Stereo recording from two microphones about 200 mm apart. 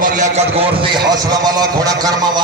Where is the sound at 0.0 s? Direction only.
40° right (ahead or behind).